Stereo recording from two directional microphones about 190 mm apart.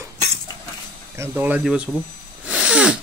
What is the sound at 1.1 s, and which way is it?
Speech, 10° right (ahead or behind).